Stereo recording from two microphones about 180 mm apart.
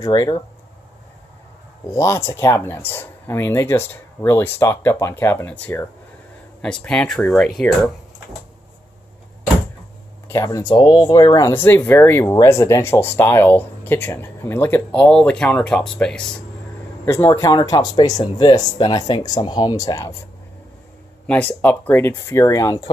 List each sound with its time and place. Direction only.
0.0 s speech: 20° left (ahead or behind)
1.9 s speech: 15° left (ahead or behind)
10.2 s speech: 15° left (ahead or behind)
21.3 s speech: 10° left (ahead or behind)